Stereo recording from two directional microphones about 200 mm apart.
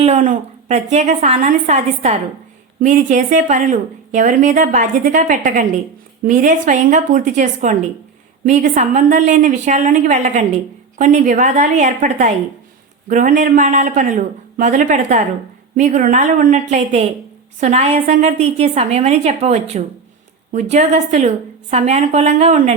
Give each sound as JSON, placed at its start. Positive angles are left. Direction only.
{"t": 0.0, "sound": "a woman's voice", "side_deg": -35}